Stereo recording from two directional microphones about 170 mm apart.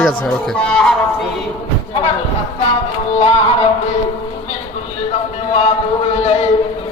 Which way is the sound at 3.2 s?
35° left (ahead or behind).